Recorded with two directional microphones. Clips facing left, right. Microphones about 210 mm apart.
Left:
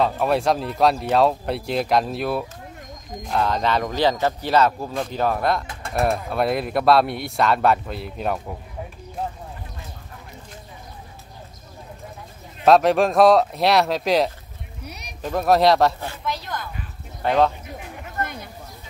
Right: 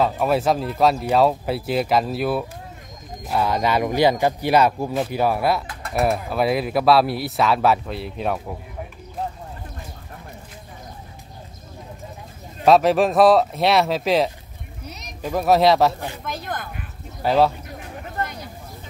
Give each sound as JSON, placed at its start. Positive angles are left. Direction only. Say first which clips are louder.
{"t": 0.0, "sound": "speech", "louder": "right 1 dB", "side_deg": 0}
{"t": 5.7, "sound": "a sound", "louder": "even", "side_deg": 25}
{"t": 5.9, "sound": "speech", "louder": "right 1 dB", "side_deg": -5}
{"t": 12.6, "sound": "speech", "louder": "even", "side_deg": 0}
{"t": 14.9, "sound": "a sound", "louder": "right 1 dB", "side_deg": 10}
{"t": 15.2, "sound": "speech", "louder": "right 1 dB", "side_deg": 0}
{"t": 16.3, "sound": "speech", "louder": "left 3 dB", "side_deg": -50}
{"t": 17.2, "sound": "speech", "louder": "right 1 dB", "side_deg": -5}